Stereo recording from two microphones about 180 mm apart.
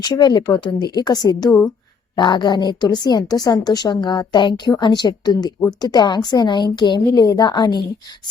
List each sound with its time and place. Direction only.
0.0 s a woman's voice: 25° left (ahead or behind)